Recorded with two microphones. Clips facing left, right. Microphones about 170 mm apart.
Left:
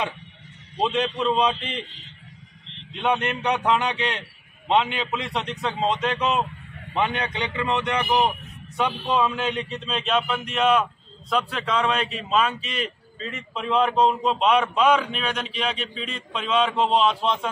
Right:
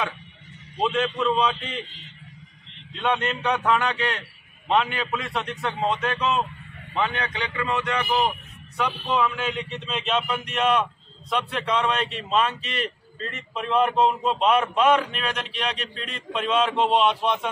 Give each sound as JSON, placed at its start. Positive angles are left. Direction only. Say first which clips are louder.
{"t": 0.7, "sound": "a man's voice", "louder": "even", "side_deg": 20}
{"t": 3.0, "sound": "a man's voice", "louder": "left 1 dB", "side_deg": 15}
{"t": 9.8, "sound": "a man's voice", "louder": "left 1 dB", "side_deg": 0}